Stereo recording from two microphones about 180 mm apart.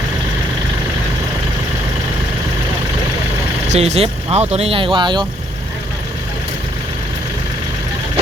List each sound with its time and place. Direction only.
3.7 s speech: 35° right (ahead or behind)